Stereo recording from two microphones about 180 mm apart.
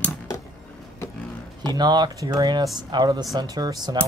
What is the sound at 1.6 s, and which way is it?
Speech, 25° right (ahead or behind).